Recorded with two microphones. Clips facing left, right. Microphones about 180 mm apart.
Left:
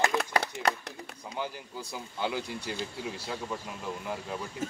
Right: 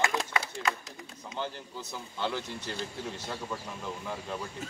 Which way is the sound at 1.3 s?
10° left (ahead or behind).